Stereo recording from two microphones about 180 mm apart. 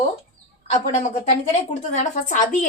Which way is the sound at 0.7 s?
40° left (ahead or behind).